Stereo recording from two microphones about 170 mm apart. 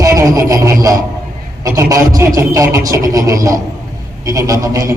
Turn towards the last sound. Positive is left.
turn(degrees=-20)  # may be behind; listen again after turning